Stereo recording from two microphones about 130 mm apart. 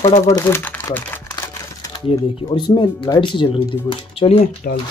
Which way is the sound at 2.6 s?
35° left (ahead or behind).